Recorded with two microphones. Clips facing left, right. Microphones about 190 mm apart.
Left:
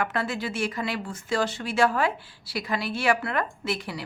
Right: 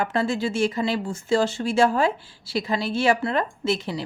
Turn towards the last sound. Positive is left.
turn(degrees=-25)  # may be behind; listen again after turning